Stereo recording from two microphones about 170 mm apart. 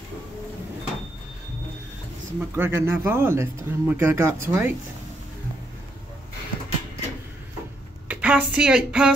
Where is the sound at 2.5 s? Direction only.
15° right (ahead or behind).